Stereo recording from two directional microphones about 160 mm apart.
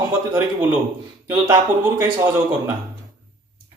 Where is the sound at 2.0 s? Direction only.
15° right (ahead or behind).